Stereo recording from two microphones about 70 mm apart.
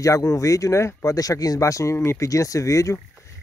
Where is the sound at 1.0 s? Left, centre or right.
Left.